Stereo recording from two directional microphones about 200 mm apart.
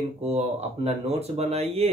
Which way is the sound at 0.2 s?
35° right (ahead or behind).